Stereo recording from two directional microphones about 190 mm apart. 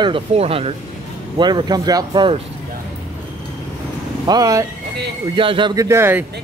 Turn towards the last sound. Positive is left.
turn(degrees=-10)  # may be behind; listen again after turning